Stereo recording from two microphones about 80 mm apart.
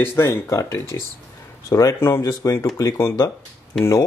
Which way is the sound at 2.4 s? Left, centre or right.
Left.